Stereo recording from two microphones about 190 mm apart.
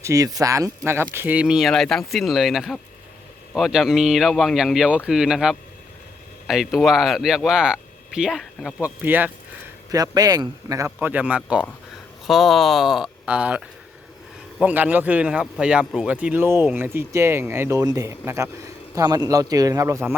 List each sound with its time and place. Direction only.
0.0 s speech: 15° right (ahead or behind)
14.6 s speech: 10° right (ahead or behind)